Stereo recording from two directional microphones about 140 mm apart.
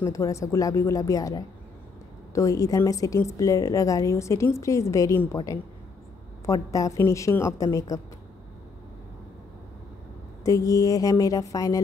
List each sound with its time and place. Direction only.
0.0 s a woman's voice: 20° left (ahead or behind)
10.4 s a woman's voice: 25° left (ahead or behind)